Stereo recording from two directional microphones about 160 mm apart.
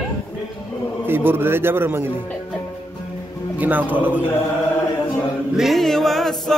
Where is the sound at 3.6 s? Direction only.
10° right (ahead or behind).